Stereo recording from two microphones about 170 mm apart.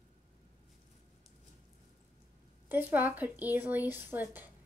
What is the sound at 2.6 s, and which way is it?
A woman's voice, 10° right (ahead or behind).